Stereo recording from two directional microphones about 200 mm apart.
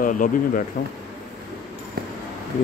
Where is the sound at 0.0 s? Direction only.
40° left (ahead or behind).